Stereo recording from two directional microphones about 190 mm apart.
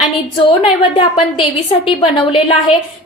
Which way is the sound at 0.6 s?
25° left (ahead or behind).